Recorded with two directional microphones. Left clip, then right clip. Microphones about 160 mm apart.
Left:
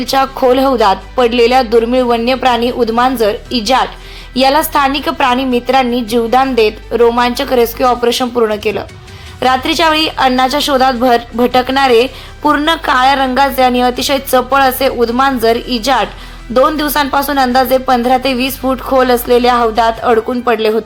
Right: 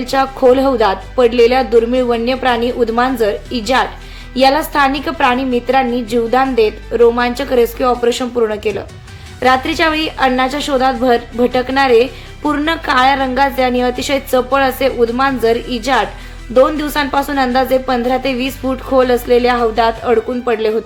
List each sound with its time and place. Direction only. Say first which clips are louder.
0.0 s a woman's voice: left 1 dB; 10° left (ahead or behind)